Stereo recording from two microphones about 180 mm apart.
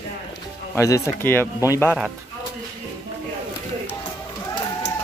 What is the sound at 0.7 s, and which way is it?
Speech, 20° left (ahead or behind).